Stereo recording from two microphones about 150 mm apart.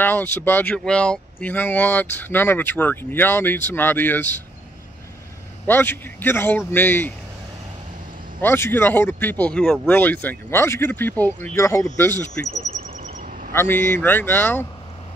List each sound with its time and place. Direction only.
0.0 s speech: 15° left (ahead or behind)
5.7 s speech: 15° left (ahead or behind)
8.4 s speech: 15° left (ahead or behind)
12.8 s bird: 65° right (ahead or behind)
13.5 s speech: 15° left (ahead or behind)